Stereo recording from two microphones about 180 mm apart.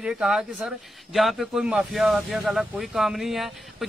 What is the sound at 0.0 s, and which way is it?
Speech, 5° right (ahead or behind).